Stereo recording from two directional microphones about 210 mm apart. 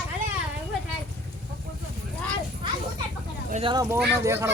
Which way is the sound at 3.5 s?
25° right (ahead or behind).